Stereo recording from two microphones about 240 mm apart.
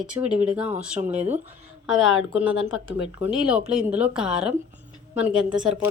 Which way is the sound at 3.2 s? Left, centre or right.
Centre.